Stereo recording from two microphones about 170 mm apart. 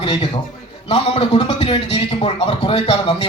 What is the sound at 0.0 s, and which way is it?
A man's voice, 30° left (ahead or behind).